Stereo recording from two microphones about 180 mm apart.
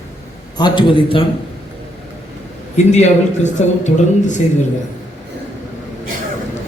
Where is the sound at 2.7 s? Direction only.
40° left (ahead or behind).